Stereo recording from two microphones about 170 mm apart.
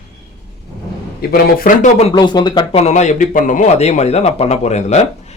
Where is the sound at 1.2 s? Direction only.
60° left (ahead or behind).